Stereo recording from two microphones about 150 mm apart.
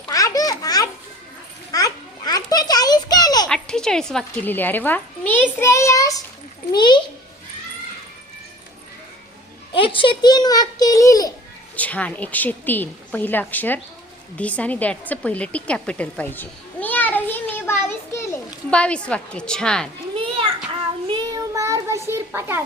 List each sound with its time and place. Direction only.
0.1 s a sound: 25° left (ahead or behind)
3.5 s a woman's voice: 5° left (ahead or behind); by 7.0 s 30° left (ahead or behind)
9.7 s a child's voice: 35° left (ahead or behind)
11.8 s a woman's voice: 10° left (ahead or behind)
14.3 s a sound: 10° left (ahead or behind)
18.7 s a woman's voice: 5° left (ahead or behind)
20.1 s children playing: 35° right (ahead or behind)
21.1 s child singing: 30° right (ahead or behind)